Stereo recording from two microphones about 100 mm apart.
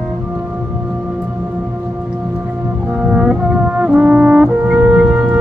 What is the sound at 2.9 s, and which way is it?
Brass instrument, 10° right (ahead or behind).